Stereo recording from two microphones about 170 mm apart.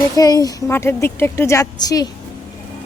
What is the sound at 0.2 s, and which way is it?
A woman's voice, 20° left (ahead or behind).